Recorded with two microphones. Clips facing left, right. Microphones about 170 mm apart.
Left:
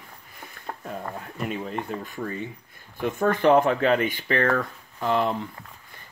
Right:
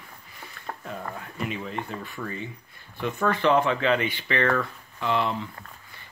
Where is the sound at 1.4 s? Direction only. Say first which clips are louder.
Left 2 dB; 45° left (ahead or behind).